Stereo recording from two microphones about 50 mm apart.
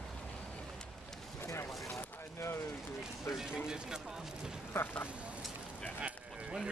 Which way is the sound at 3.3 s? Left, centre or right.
Centre.